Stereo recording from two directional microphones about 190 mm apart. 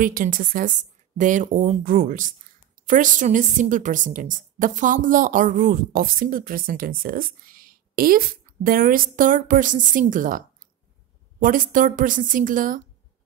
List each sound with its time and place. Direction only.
0.0 s a woman's voice: 45° right (ahead or behind)